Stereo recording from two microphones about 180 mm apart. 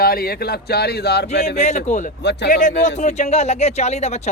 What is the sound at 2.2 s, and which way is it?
Speech, 70° left (ahead or behind).